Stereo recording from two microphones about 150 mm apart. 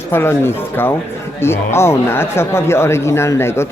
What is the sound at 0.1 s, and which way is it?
Speech, 15° left (ahead or behind).